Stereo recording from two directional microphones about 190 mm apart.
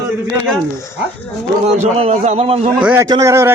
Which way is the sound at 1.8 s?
35° right (ahead or behind).